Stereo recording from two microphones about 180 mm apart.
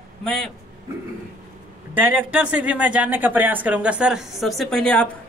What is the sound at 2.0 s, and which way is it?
A woman's voice, 10° right (ahead or behind).